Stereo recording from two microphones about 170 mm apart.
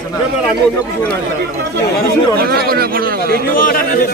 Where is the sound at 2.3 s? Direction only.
65° right (ahead or behind).